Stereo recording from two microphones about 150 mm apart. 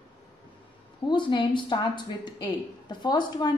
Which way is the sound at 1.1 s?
30° left (ahead or behind).